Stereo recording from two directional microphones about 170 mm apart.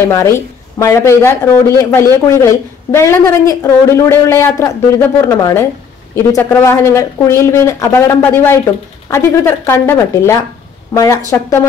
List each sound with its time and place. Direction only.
0.1 s speech: 15° left (ahead or behind)